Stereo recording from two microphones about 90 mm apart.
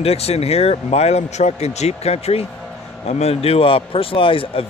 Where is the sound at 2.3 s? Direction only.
90° left.